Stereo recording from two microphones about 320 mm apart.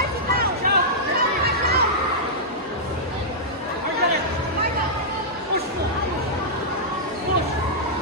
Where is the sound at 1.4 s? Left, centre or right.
Right.